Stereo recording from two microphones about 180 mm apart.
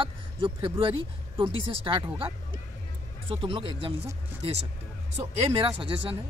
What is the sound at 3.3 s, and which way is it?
Speech, 30° right (ahead or behind).